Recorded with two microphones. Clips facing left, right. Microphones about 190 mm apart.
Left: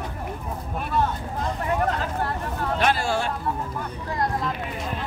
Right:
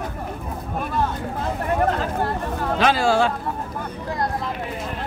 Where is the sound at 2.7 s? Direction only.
90° right.